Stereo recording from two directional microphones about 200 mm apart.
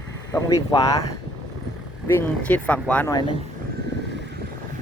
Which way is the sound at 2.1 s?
10° left (ahead or behind).